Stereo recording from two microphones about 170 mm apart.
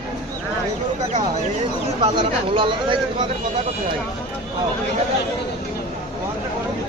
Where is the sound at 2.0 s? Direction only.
30° right (ahead or behind).